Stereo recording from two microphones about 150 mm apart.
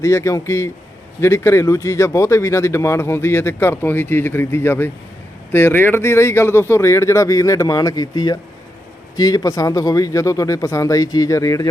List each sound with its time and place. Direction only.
0.0 s speech: 20° left (ahead or behind)